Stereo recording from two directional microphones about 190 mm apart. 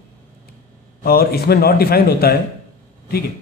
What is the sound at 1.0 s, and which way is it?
A man's voice, 55° left (ahead or behind).